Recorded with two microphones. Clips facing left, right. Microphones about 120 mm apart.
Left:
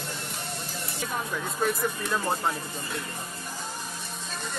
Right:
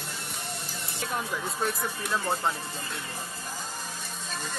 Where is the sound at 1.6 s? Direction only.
Centre (ahead or behind).